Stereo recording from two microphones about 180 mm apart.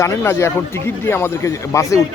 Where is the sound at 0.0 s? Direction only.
15° left (ahead or behind).